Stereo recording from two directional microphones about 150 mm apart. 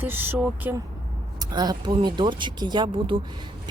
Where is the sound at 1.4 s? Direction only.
25° right (ahead or behind).